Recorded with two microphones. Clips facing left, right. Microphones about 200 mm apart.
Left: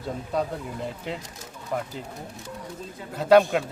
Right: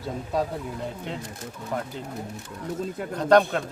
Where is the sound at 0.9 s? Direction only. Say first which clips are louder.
Even; 5° left (ahead or behind).